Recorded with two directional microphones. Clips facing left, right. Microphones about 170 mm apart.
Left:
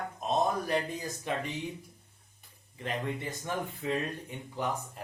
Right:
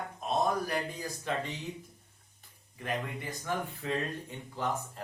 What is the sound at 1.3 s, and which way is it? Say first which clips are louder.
Speech: even; 15° left (ahead or behind).